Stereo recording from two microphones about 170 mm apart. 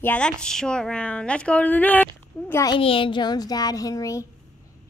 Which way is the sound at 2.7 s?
30° left (ahead or behind).